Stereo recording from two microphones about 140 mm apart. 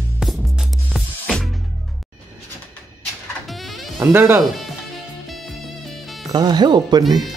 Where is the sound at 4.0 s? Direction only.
15° right (ahead or behind).